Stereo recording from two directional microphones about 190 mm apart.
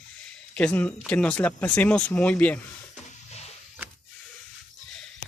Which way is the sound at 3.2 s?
35° left (ahead or behind).